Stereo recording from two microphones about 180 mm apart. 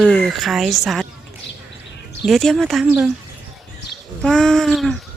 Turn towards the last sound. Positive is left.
turn(degrees=0)  # may be behind; listen again after turning